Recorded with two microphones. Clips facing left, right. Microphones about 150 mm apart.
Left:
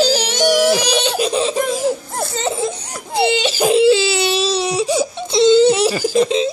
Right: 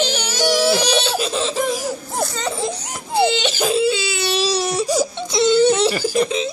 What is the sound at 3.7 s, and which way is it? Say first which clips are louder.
Crying: left 9 dB; 90° left.